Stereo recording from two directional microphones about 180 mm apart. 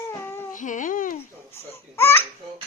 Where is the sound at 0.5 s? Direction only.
45° left (ahead or behind).